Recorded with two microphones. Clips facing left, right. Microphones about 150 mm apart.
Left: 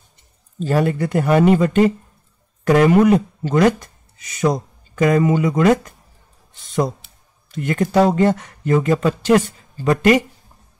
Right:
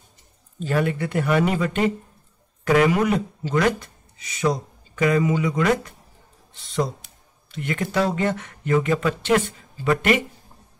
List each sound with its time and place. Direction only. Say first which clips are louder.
0.6 s speech: left 5 dB; 35° left (ahead or behind)
7.5 s speech: left 7 dB; 45° left (ahead or behind)